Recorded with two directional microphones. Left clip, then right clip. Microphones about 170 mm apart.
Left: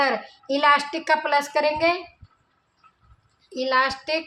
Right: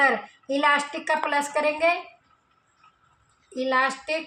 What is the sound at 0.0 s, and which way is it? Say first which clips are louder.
A woman's voice: right 1 dB; 20° left (ahead or behind).